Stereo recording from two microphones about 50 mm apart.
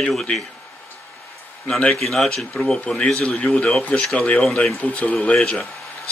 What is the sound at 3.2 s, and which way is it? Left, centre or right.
Speech, left.